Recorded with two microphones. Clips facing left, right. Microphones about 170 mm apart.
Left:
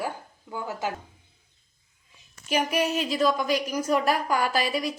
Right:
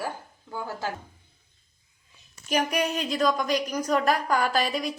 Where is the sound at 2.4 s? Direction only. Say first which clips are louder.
Left 1 dB; 5° left (ahead or behind).